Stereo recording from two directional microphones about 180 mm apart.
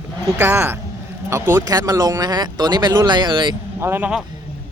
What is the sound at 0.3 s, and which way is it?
Speech, 15° right (ahead or behind).